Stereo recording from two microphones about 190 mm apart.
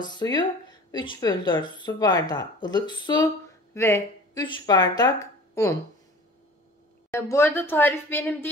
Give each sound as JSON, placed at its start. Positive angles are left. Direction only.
{"t": 0.0, "sound": "speech", "side_deg": 20}
{"t": 7.1, "sound": "a woman's voice", "side_deg": 15}